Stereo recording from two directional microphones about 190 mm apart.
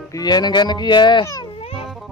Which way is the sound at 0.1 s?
20° left (ahead or behind).